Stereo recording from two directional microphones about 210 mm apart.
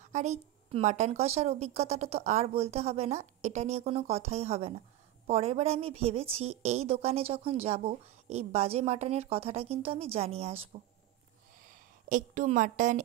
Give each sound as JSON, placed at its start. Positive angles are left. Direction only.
{"t": 0.0, "sound": "a woman's voice", "side_deg": -35}
{"t": 12.1, "sound": "a woman's voice", "side_deg": -35}